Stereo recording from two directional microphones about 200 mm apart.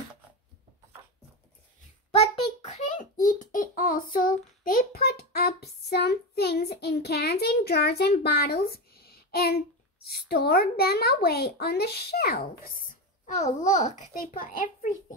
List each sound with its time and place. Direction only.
2.0 s a sound: 30° left (ahead or behind); by 9.6 s 50° left (ahead or behind)
10.0 s a woman's voice: 50° left (ahead or behind)
13.2 s a child's voice: 35° left (ahead or behind)